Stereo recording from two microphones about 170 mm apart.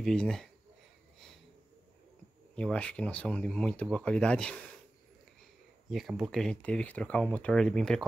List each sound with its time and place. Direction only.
0.0 s speech: 5° left (ahead or behind)
2.5 s speech: 5° left (ahead or behind)
5.9 s speech: centre (ahead or behind)